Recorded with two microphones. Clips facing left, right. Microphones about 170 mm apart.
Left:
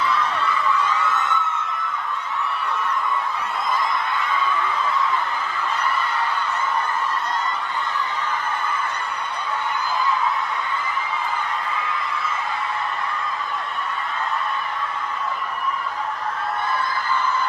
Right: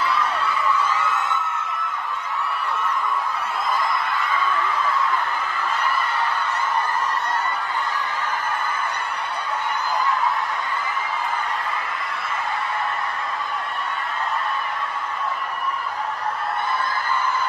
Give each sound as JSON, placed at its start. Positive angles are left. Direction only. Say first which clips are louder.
{"t": 0.0, "sound": "crowd", "louder": "even", "side_deg": 0}